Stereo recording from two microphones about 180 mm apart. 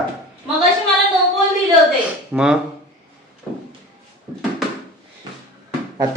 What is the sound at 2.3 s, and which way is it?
Speech, 5° right (ahead or behind).